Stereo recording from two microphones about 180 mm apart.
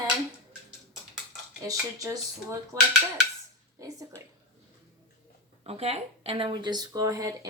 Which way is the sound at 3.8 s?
20° right (ahead or behind).